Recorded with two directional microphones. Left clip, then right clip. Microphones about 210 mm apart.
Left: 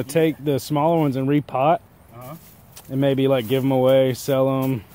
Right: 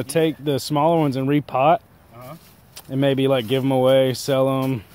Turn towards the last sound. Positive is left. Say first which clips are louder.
# even
turn(degrees=-20)  # may be behind; listen again after turning